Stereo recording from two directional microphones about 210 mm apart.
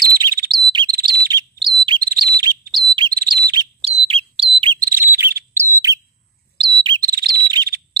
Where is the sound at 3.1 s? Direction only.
45° right (ahead or behind).